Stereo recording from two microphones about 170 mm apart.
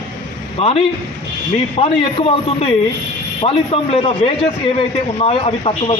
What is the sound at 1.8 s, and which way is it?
A man's voice, 35° left (ahead or behind).